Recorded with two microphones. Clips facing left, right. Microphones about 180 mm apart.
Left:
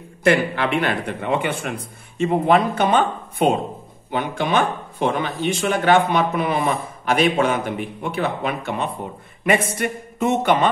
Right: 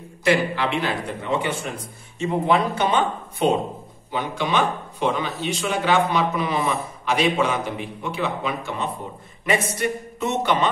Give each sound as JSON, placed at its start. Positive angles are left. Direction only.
{"t": 0.2, "sound": "a man's voice", "side_deg": 55}